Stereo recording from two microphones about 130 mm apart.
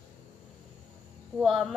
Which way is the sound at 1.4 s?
Centre (ahead or behind).